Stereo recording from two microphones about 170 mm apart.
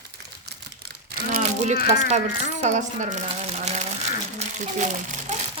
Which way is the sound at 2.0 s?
40° right (ahead or behind).